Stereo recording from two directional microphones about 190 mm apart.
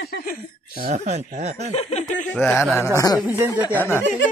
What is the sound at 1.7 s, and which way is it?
Speech, 40° left (ahead or behind).